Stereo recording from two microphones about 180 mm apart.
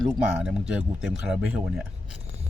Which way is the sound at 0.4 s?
5° right (ahead or behind).